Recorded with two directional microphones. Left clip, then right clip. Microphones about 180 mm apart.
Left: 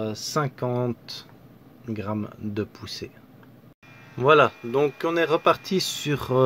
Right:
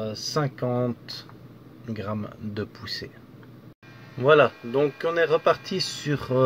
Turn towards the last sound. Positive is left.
turn(degrees=40)  # may be behind; listen again after turning